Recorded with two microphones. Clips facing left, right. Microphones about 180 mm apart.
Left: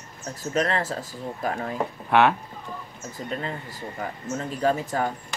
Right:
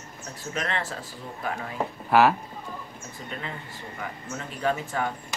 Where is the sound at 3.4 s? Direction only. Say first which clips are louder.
Left 5 dB; 40° left (ahead or behind).